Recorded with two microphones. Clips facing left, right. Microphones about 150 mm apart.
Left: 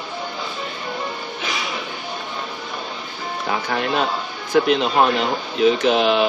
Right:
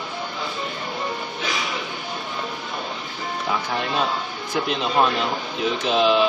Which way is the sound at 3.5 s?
70° left (ahead or behind).